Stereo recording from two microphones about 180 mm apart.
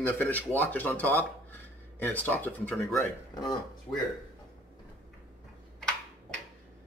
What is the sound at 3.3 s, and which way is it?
Speech, 20° left (ahead or behind).